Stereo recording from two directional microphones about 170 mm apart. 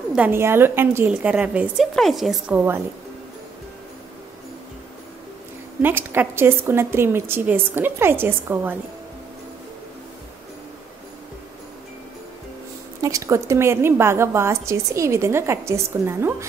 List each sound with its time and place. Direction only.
0.1 s a woman's voice: 10° right (ahead or behind)
5.8 s a woman's voice: 10° right (ahead or behind)
13.0 s a woman's voice: 20° right (ahead or behind)